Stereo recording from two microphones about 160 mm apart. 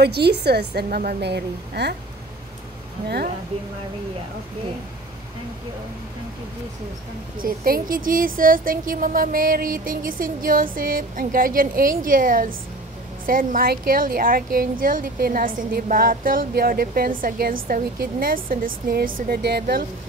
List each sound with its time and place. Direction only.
0.0 s a woman's voice: 90° right
7.3 s a woman's voice: 65° right (ahead or behind); by 19.8 s 80° right